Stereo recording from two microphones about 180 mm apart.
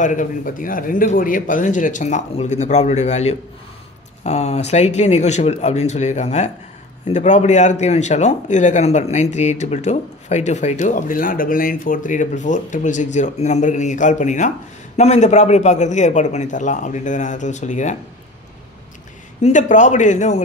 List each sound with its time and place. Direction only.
0.0 s speech: 45° left (ahead or behind)
19.4 s speech: 45° left (ahead or behind)